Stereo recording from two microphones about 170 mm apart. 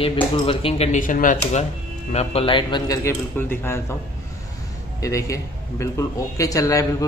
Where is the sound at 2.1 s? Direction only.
35° left (ahead or behind); by 4.0 s 15° left (ahead or behind).